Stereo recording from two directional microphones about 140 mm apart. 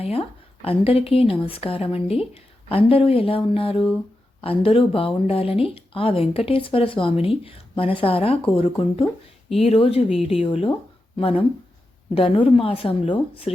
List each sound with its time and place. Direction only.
0.0 s a woman's voice: 45° left (ahead or behind)